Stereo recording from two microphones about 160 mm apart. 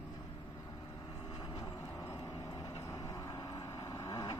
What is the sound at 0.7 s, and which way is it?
Vehicle, 25° left (ahead or behind).